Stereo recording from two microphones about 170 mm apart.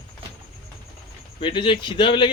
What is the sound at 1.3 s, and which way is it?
Speech, 30° left (ahead or behind).